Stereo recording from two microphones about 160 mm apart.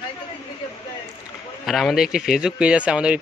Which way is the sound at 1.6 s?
Centre (ahead or behind).